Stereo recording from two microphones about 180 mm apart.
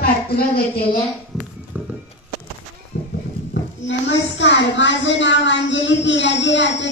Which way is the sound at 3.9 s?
90° left.